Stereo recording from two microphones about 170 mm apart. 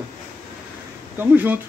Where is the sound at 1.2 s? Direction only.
10° right (ahead or behind).